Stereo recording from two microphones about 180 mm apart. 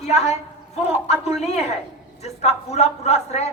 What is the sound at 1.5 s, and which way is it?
A man's voice, 35° left (ahead or behind).